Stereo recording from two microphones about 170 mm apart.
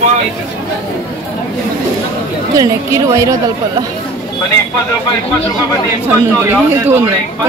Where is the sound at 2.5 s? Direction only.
20° right (ahead or behind).